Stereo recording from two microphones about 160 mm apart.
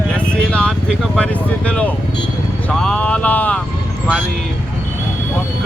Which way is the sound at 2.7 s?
5° left (ahead or behind).